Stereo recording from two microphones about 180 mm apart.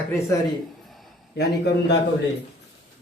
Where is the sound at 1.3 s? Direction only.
70° left (ahead or behind).